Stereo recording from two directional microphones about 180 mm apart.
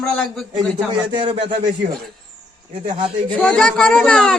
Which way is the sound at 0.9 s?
25° right (ahead or behind).